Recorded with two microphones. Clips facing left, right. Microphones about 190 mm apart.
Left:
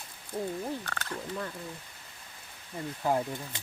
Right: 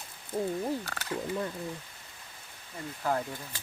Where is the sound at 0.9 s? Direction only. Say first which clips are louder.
Right 3 dB; 5° right (ahead or behind).